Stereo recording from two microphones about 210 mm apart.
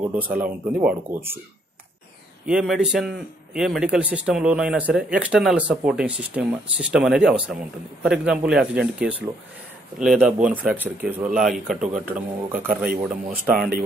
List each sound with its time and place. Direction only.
0.1 s speech: 10° right (ahead or behind)
2.4 s speech: centre (ahead or behind)
12.5 s speech: 45° right (ahead or behind)
13.1 s speech: 5° right (ahead or behind)